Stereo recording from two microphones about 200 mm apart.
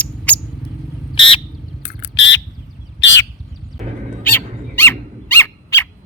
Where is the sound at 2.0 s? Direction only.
65° left (ahead or behind).